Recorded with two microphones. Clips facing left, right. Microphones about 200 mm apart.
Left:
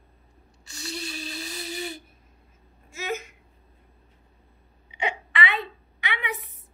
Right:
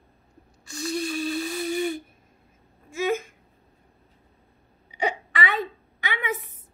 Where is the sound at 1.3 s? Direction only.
50° right (ahead or behind).